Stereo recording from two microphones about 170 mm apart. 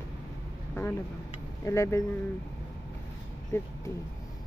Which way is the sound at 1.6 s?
15° left (ahead or behind).